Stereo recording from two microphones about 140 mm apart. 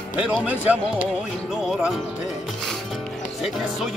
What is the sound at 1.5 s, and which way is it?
Music, 5° right (ahead or behind).